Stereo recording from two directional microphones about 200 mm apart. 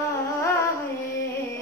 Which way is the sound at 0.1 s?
15° left (ahead or behind).